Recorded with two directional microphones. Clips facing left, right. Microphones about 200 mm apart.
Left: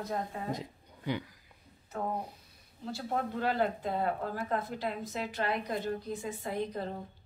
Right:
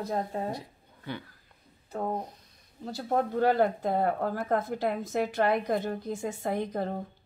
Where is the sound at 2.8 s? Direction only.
40° right (ahead or behind).